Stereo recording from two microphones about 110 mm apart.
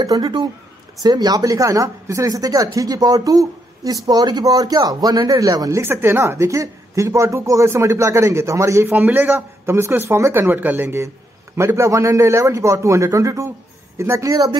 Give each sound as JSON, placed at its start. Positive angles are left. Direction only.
{"t": 0.0, "sound": "speech", "side_deg": -35}